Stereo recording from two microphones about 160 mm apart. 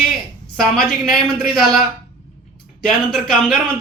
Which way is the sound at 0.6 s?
Centre (ahead or behind).